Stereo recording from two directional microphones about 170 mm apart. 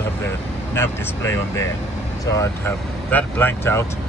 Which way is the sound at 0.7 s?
15° left (ahead or behind).